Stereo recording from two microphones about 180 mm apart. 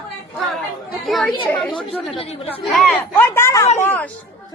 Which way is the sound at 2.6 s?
Centre (ahead or behind).